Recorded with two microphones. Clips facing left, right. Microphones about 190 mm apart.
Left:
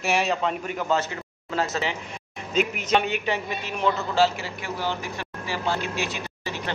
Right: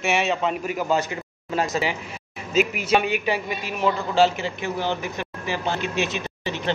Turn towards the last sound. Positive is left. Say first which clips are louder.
# right 4 dB
turn(degrees=-25)  # may be behind; listen again after turning